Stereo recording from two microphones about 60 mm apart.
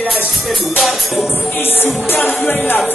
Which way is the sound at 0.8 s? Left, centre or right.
Centre.